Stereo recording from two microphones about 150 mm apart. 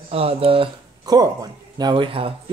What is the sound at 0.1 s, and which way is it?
Speech, 40° right (ahead or behind).